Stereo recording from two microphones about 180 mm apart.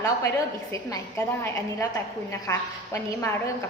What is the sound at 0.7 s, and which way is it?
A woman's voice, 15° left (ahead or behind).